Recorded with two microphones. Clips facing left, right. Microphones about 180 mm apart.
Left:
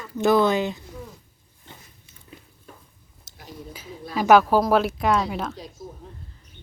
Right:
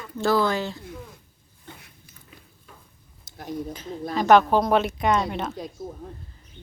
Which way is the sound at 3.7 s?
5° left (ahead or behind).